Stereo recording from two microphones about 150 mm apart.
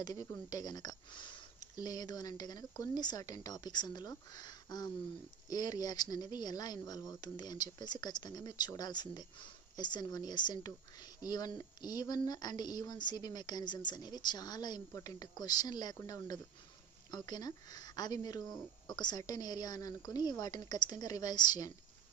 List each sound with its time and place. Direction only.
0.0 s speech: 25° left (ahead or behind)